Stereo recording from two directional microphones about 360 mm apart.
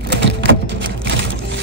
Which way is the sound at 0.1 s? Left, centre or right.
Right.